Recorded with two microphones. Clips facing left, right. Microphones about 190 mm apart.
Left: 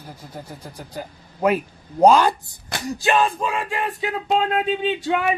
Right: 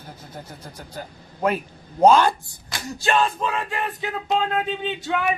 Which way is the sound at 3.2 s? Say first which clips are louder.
Left 2 dB; 5° left (ahead or behind).